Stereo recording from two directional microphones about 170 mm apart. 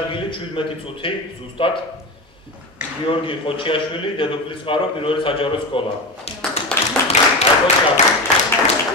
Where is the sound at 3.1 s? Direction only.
30° left (ahead or behind).